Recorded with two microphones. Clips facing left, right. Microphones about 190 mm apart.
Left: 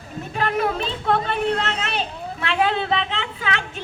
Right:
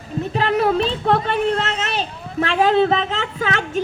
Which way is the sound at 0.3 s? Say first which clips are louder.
Right 4 dB; 35° right (ahead or behind).